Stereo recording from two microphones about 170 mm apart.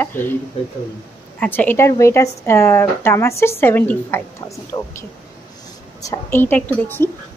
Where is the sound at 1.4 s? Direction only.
10° left (ahead or behind).